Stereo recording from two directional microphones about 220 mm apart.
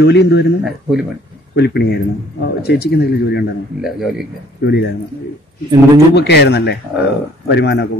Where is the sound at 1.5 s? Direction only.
50° left (ahead or behind).